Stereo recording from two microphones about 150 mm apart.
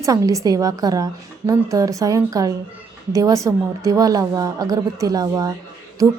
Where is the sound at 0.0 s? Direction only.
20° right (ahead or behind).